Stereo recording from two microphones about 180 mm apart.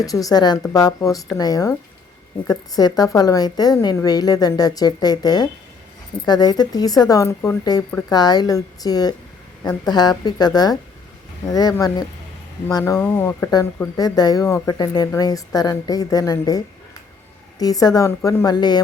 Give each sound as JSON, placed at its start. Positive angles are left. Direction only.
{"t": 0.0, "sound": "a woman's voice", "side_deg": 20}